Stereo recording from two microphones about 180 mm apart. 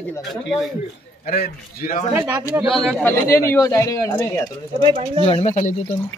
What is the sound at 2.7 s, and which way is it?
Speech, centre (ahead or behind).